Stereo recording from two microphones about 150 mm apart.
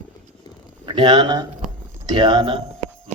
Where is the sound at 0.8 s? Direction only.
30° right (ahead or behind).